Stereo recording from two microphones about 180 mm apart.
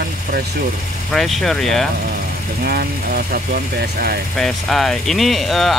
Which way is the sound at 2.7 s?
60° right (ahead or behind).